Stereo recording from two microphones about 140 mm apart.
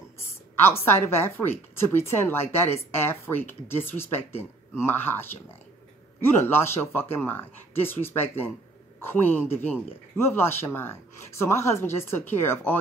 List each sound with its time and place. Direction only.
0.6 s speech: 15° left (ahead or behind)